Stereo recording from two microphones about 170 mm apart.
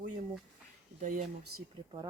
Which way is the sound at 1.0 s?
50° right (ahead or behind).